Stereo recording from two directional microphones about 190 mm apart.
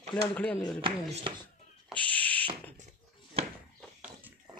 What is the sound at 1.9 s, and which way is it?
Owl, 5° left (ahead or behind).